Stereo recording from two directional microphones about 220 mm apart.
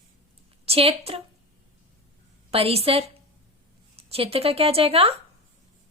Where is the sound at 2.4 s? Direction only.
25° right (ahead or behind).